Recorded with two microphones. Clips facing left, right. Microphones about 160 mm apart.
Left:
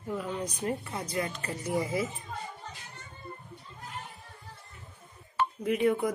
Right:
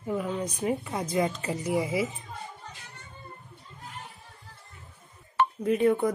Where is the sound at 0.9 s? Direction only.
20° right (ahead or behind).